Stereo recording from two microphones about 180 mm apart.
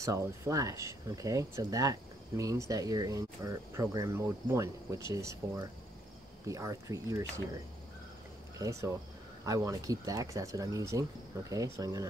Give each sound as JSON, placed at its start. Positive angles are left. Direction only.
{"t": 0.0, "sound": "speech", "side_deg": -15}
{"t": 8.5, "sound": "speech", "side_deg": -15}